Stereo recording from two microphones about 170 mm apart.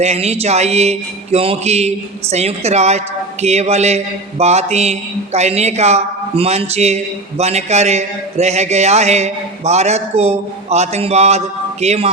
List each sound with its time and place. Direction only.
0.0 s a man's voice: 40° right (ahead or behind)